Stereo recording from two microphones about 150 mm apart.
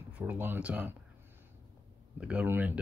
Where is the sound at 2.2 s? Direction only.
10° right (ahead or behind).